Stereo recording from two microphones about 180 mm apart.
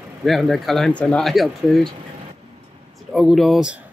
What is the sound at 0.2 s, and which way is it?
Speech, centre (ahead or behind).